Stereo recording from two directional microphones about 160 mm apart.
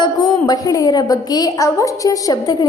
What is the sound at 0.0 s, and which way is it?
A woman's voice, 25° left (ahead or behind).